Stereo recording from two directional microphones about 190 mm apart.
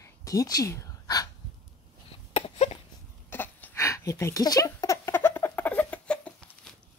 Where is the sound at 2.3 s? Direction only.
30° left (ahead or behind).